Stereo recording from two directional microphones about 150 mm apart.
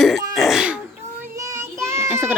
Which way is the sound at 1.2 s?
20° right (ahead or behind).